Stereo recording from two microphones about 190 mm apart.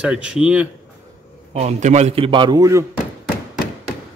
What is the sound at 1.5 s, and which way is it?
A man's voice, 35° right (ahead or behind).